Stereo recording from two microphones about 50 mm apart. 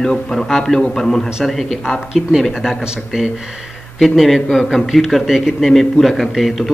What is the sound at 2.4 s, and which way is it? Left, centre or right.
A man's voice, centre.